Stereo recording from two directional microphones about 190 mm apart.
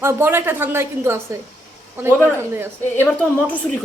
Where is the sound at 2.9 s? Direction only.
10° left (ahead or behind).